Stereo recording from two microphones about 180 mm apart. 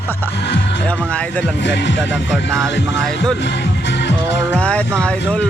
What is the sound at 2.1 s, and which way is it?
Speech, centre (ahead or behind).